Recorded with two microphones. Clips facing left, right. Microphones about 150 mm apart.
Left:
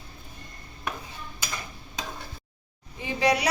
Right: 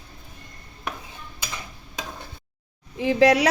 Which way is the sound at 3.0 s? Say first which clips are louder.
Right 7 dB; 90° right.